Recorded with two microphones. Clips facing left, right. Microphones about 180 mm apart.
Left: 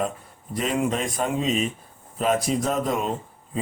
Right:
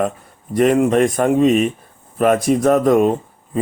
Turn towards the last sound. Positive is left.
turn(degrees=-55)  # may be behind; listen again after turning